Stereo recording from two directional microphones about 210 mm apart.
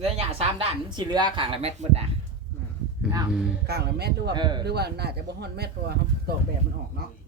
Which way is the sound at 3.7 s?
50° right (ahead or behind).